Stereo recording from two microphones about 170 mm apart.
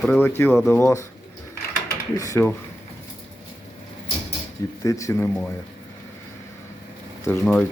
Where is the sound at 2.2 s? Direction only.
15° left (ahead or behind).